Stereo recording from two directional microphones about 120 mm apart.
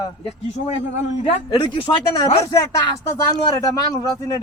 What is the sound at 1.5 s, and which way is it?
Speech, 45° left (ahead or behind).